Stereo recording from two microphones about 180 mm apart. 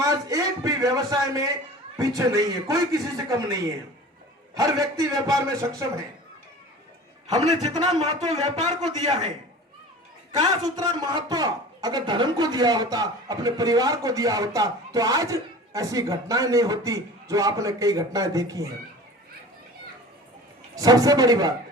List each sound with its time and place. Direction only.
0.0 s a sound: 20° right (ahead or behind)
2.0 s a man's voice: 20° right (ahead or behind)
7.3 s a man's voice: 35° right (ahead or behind)
10.8 s speech: 20° right (ahead or behind)
20.7 s speech: 20° right (ahead or behind)